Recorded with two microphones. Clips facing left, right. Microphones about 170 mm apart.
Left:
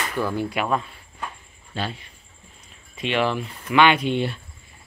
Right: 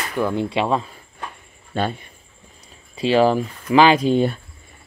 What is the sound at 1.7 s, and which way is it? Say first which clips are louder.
Speech: right 7 dB; 50° right (ahead or behind).